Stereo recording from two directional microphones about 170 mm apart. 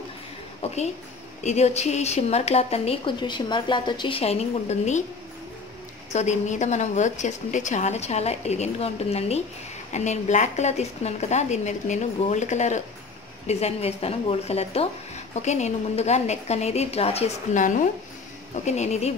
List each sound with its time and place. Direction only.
1.4 s a woman's voice: 40° left (ahead or behind)
6.1 s a woman's voice: 40° left (ahead or behind)